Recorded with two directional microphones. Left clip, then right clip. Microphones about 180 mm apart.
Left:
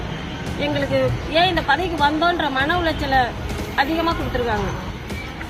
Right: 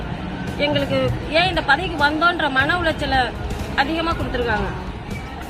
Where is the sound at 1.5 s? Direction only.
25° right (ahead or behind).